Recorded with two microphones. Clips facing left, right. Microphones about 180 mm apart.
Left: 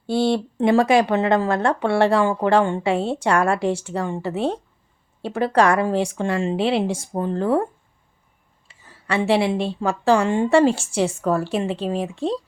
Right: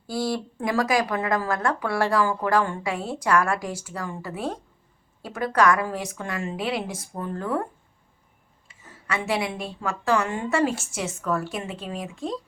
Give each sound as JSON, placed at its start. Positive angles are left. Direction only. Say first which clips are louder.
{"t": 0.1, "sound": "speech", "louder": "left 7 dB", "side_deg": 25}